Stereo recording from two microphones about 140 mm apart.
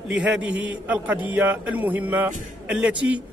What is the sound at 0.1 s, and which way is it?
A man's voice, 5° right (ahead or behind).